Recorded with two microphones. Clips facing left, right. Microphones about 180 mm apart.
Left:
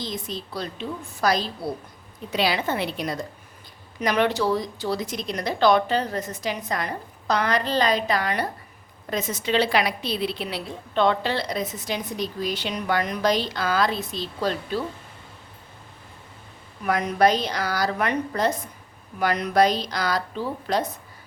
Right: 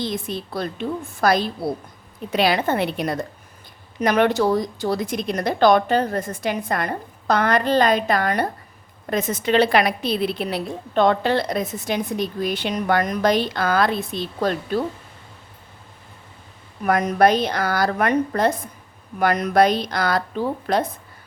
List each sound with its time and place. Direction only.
0.0 s a woman's voice: 60° right (ahead or behind)
16.8 s a woman's voice: 50° right (ahead or behind)